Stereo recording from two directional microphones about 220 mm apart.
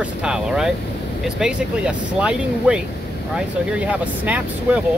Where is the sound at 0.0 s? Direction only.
5° right (ahead or behind).